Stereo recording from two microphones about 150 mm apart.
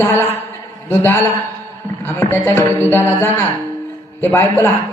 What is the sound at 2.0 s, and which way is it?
A man's voice, 15° left (ahead or behind).